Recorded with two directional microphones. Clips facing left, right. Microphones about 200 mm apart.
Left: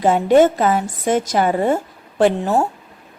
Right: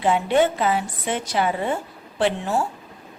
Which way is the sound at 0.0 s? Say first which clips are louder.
Left 6 dB; 45° left (ahead or behind).